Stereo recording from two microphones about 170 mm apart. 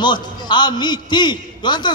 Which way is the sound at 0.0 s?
25° left (ahead or behind).